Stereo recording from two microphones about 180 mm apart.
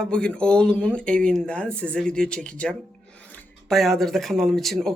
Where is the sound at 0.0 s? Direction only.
5° left (ahead or behind).